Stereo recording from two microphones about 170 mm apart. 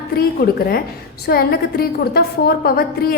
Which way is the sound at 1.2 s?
65° left (ahead or behind).